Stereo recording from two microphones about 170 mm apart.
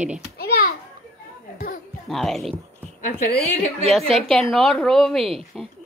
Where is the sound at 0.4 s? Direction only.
65° left (ahead or behind).